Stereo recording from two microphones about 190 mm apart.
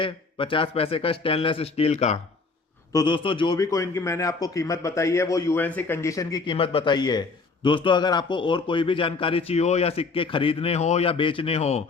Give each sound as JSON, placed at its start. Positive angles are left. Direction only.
{"t": 0.0, "sound": "a man's voice", "side_deg": 25}
{"t": 2.9, "sound": "a man's voice", "side_deg": 25}